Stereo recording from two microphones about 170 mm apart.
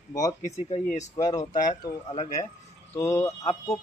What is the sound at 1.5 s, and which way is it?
Speech, 45° left (ahead or behind).